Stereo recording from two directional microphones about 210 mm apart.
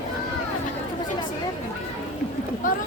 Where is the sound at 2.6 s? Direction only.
40° left (ahead or behind).